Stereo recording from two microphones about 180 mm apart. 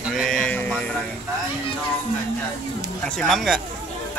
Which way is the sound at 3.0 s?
5° left (ahead or behind).